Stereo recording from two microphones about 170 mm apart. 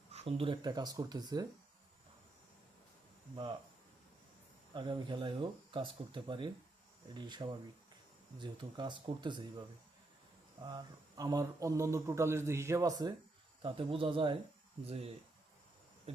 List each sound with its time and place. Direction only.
0.1 s speech: 35° right (ahead or behind)
4.7 s speech: 30° right (ahead or behind)
10.6 s speech: 25° right (ahead or behind)